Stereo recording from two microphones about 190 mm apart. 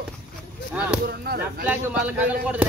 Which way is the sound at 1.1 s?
55° right (ahead or behind).